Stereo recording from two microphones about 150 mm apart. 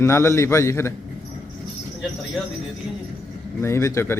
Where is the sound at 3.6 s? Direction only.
20° left (ahead or behind).